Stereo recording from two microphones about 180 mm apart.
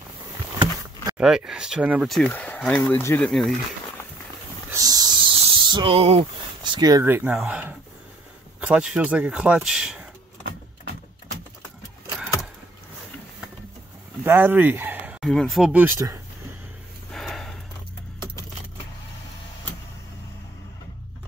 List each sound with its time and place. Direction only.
1.1 s speech: 5° right (ahead or behind)
4.6 s snake: 20° right (ahead or behind)
8.5 s speech: 5° right (ahead or behind)
14.2 s speech: 10° right (ahead or behind)
17.1 s gasp: centre (ahead or behind)